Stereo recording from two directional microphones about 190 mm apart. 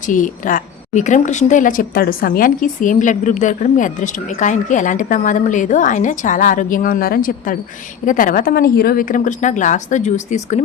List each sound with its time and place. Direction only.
0.1 s a woman's voice: 45° left (ahead or behind)